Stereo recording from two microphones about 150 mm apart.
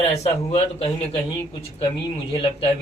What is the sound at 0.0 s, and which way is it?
Speech, 45° left (ahead or behind).